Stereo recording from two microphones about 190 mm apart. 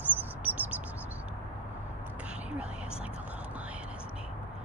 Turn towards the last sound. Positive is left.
turn(degrees=-5)  # may be behind; listen again after turning